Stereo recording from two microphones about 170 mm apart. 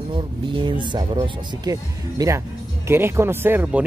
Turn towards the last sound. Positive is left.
turn(degrees=-10)  # may be behind; listen again after turning